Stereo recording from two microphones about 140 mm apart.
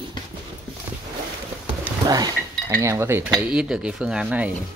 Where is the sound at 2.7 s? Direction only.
20° right (ahead or behind).